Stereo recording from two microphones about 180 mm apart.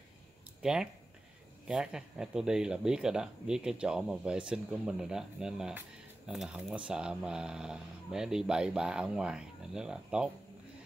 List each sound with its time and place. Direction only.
0.6 s speech: 5° right (ahead or behind)